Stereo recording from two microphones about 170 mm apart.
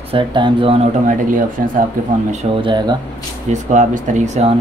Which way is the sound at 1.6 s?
55° right (ahead or behind).